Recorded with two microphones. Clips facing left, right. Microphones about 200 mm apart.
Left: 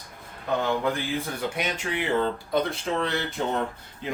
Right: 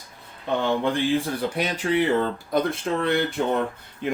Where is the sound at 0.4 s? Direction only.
30° right (ahead or behind).